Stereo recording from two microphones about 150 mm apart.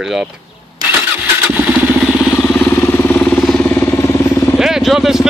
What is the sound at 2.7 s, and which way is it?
Vehicle, 15° left (ahead or behind).